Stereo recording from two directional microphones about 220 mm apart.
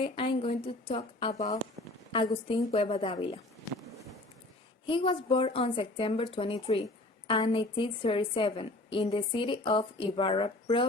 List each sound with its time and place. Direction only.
0.0 s a woman's voice: 25° left (ahead or behind)
4.9 s a woman's voice: 25° left (ahead or behind)